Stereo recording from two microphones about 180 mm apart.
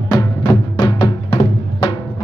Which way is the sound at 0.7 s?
25° left (ahead or behind).